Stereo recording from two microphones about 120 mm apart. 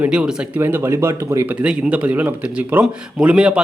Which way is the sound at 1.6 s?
10° right (ahead or behind).